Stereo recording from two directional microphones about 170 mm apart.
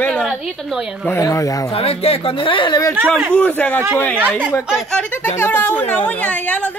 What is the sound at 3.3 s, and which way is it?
Speech, 10° left (ahead or behind).